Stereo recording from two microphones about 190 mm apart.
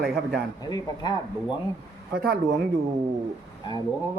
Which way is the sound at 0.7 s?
20° left (ahead or behind).